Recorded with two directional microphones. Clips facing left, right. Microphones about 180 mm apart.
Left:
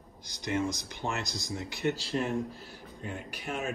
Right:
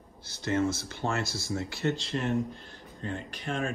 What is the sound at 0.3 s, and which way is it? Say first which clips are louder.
Speech: right 3 dB; 15° left (ahead or behind).